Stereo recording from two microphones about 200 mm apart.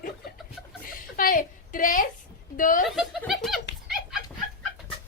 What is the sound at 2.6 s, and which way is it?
Speech, 40° left (ahead or behind).